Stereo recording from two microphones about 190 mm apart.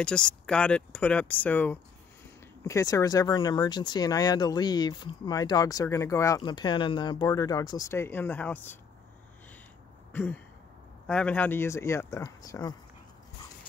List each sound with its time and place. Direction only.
0.0 s speech: 5° left (ahead or behind)
10.1 s speech: 10° left (ahead or behind)